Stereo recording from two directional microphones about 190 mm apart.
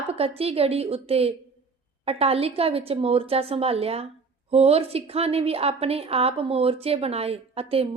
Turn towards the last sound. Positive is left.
turn(degrees=-30)  # may be behind; listen again after turning